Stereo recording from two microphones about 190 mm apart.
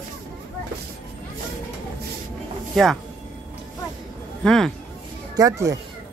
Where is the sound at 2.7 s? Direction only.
Centre (ahead or behind).